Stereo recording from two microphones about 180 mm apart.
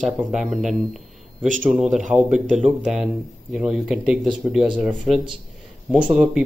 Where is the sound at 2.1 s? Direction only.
5° right (ahead or behind).